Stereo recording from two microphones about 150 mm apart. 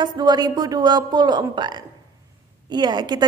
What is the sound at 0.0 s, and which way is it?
A woman's voice, 30° right (ahead or behind).